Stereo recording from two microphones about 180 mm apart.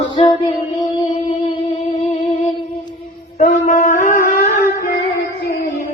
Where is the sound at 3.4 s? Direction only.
45° left (ahead or behind).